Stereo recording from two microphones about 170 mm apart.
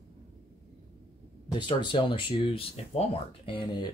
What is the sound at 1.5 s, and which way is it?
Speech, 25° left (ahead or behind).